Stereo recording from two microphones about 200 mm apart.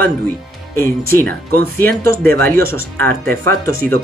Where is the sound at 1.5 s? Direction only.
45° right (ahead or behind).